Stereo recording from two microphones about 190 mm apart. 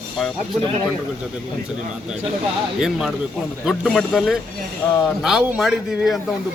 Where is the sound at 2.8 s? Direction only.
5° right (ahead or behind).